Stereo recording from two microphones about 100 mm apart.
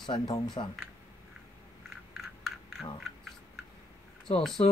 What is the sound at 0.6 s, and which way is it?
Speech, 65° left (ahead or behind).